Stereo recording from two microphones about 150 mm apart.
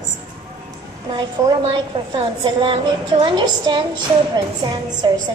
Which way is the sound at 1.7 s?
35° right (ahead or behind).